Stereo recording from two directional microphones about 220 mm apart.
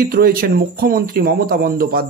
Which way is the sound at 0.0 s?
40° right (ahead or behind).